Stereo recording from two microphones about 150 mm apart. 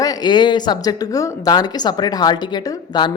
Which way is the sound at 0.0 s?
25° left (ahead or behind).